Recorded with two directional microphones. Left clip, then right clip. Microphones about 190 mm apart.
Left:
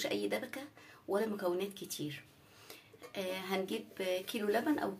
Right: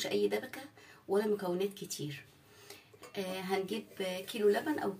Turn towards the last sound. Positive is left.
turn(degrees=45)  # may be behind; listen again after turning